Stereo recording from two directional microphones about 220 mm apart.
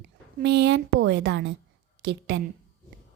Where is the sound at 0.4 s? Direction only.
50° right (ahead or behind).